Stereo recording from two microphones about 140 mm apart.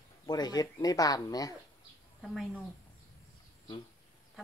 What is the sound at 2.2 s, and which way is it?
Speech, centre (ahead or behind).